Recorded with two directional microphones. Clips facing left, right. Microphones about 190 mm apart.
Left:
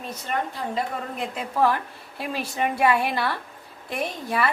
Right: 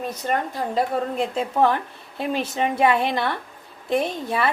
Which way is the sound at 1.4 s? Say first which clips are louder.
Right 1 dB; 20° right (ahead or behind).